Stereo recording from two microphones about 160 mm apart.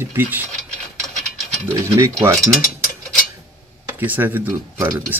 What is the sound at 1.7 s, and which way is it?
Speech, 15° right (ahead or behind).